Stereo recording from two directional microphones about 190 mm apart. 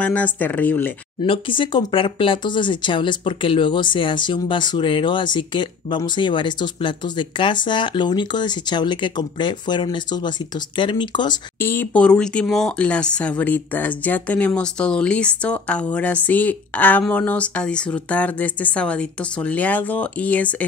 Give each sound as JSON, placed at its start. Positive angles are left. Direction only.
{"t": 0.0, "sound": "speech", "side_deg": 5}
{"t": 1.2, "sound": "speech", "side_deg": 25}
{"t": 11.6, "sound": "speech", "side_deg": 10}